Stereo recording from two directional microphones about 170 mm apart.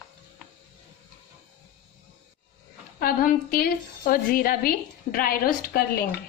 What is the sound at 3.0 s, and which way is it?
A woman's voice, 60° left (ahead or behind).